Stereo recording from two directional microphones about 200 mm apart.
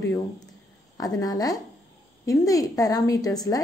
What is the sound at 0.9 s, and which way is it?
A woman's voice, 20° left (ahead or behind).